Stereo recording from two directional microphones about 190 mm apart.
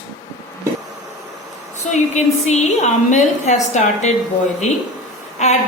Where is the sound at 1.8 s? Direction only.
40° left (ahead or behind).